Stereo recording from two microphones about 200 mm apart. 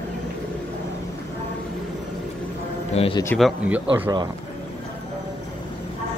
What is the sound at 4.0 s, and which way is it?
Speech, 20° right (ahead or behind).